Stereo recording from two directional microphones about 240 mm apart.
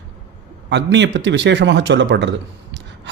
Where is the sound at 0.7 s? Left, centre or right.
Right.